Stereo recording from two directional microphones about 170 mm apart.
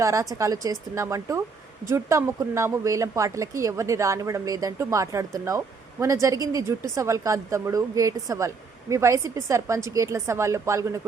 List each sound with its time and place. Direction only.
0.0 s speech: 20° right (ahead or behind)